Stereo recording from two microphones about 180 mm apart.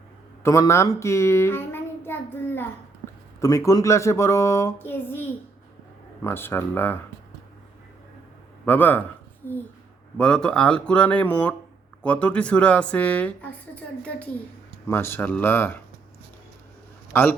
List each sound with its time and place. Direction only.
0.4 s a child's voice: 15° left (ahead or behind)
3.4 s speech: 20° left (ahead or behind)
8.6 s speech: 10° left (ahead or behind)
14.8 s speech: 15° left (ahead or behind)
17.1 s a man's voice: 10° left (ahead or behind)